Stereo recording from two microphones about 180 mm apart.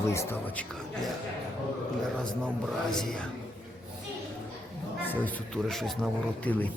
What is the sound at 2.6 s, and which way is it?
Speech, centre (ahead or behind).